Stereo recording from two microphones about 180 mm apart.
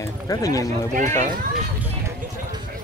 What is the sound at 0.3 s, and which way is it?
Speech, 20° left (ahead or behind).